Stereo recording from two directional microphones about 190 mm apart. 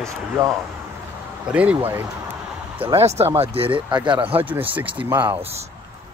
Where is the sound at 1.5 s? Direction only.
5° right (ahead or behind).